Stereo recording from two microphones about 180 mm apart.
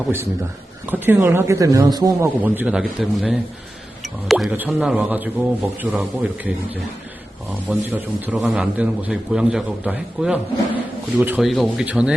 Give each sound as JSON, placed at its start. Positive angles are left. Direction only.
{"t": 0.9, "sound": "a man's voice", "side_deg": -10}
{"t": 7.7, "sound": "a man's voice", "side_deg": -10}